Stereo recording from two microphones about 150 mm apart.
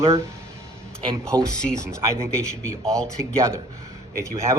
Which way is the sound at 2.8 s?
5° left (ahead or behind).